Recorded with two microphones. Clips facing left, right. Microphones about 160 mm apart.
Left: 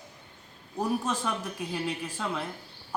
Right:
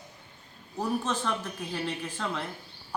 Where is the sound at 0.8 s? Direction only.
10° left (ahead or behind).